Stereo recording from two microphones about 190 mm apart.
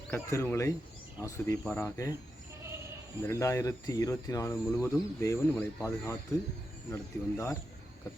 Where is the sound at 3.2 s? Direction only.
15° left (ahead or behind).